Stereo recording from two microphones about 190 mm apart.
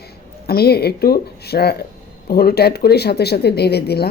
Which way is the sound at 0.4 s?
55° left (ahead or behind).